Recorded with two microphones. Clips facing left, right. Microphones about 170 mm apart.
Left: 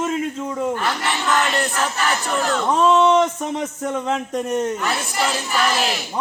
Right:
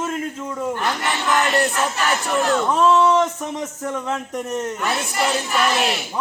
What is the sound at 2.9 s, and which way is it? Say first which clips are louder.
Speech: left 2 dB; 20° left (ahead or behind).